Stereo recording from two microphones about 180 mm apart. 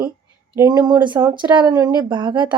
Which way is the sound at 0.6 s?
20° right (ahead or behind).